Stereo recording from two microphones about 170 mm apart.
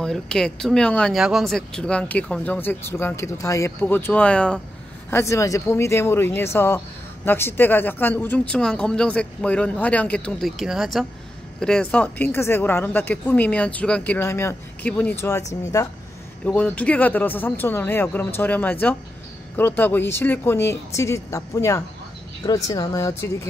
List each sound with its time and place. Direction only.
0.0 s speech: 5° left (ahead or behind)
5.1 s speech: 15° left (ahead or behind)
16.4 s speech: 5° left (ahead or behind)